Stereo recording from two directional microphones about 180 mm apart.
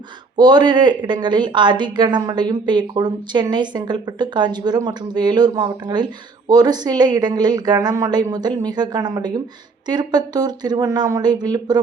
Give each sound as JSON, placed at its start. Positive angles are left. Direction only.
{"t": 0.3, "sound": "speech", "side_deg": -25}